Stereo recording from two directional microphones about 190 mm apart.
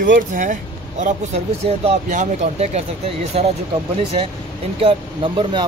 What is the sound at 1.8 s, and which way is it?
Speech, 40° right (ahead or behind).